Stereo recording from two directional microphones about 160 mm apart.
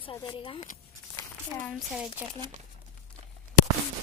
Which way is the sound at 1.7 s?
5° right (ahead or behind).